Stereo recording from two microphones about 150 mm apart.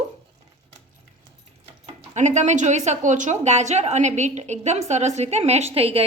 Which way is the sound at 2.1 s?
50° right (ahead or behind).